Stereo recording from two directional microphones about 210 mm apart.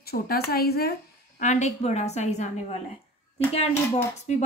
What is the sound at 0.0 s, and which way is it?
Speech, 45° left (ahead or behind).